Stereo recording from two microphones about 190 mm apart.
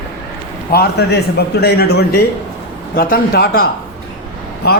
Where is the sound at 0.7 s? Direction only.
55° left (ahead or behind).